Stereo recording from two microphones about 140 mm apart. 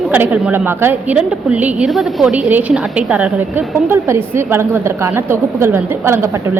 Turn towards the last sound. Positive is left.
turn(degrees=-15)  # may be behind; listen again after turning